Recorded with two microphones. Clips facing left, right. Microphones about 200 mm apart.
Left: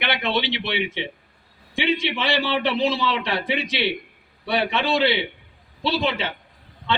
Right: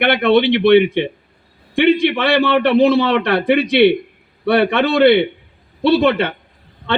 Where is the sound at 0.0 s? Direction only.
60° right (ahead or behind).